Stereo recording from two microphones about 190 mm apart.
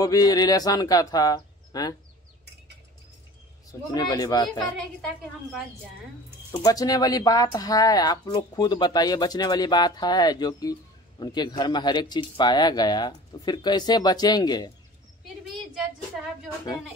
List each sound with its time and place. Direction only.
0.0 s speech: 20° left (ahead or behind)
3.9 s speech: 20° left (ahead or behind)
4.7 s a woman's voice: centre (ahead or behind)
6.5 s speech: 20° left (ahead or behind)